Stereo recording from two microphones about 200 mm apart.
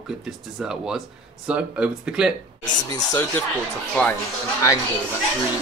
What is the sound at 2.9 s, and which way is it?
Speech, 15° left (ahead or behind).